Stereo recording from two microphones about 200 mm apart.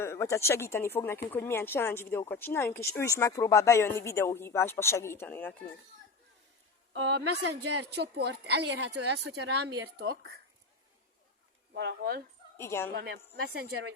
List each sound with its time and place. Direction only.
0.0 s speech: 15° left (ahead or behind)
6.9 s a woman's voice: 60° right (ahead or behind)
11.7 s a woman's voice: 55° right (ahead or behind)
12.5 s a woman's voice: 10° left (ahead or behind)
12.9 s a woman's voice: 55° right (ahead or behind)